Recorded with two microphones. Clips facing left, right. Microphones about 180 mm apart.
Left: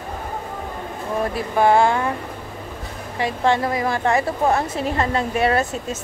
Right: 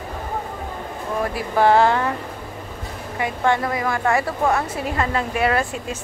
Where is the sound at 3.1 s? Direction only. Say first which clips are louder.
Left 1 dB; 25° left (ahead or behind).